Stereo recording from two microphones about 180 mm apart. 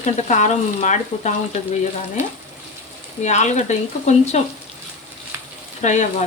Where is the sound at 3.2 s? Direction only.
40° left (ahead or behind).